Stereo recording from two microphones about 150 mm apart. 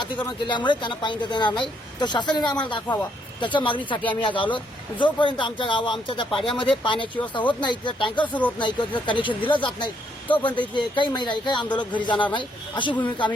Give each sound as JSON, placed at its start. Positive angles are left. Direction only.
{"t": 0.0, "sound": "speech", "side_deg": 30}